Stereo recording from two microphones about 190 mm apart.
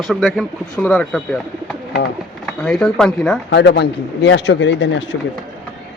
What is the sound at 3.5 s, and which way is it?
A man's voice, 65° left (ahead or behind).